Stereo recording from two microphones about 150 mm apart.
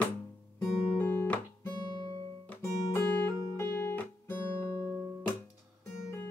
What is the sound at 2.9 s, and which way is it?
Music, 15° left (ahead or behind).